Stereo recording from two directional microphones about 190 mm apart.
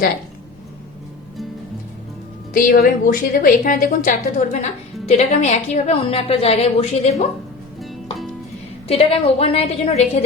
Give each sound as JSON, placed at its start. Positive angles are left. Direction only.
{"t": 2.5, "sound": "a woman's voice", "side_deg": 45}
{"t": 8.9, "sound": "a woman's voice", "side_deg": 30}